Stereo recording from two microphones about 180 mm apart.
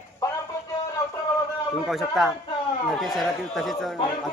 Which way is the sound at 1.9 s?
Centre (ahead or behind).